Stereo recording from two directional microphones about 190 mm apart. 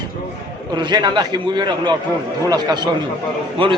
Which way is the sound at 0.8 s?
25° right (ahead or behind).